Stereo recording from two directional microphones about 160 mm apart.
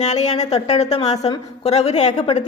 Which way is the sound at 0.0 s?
45° left (ahead or behind).